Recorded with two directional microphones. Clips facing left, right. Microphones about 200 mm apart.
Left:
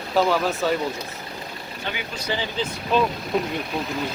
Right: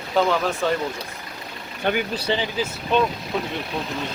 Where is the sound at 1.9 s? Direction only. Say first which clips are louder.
Right 10 dB; 55° right (ahead or behind).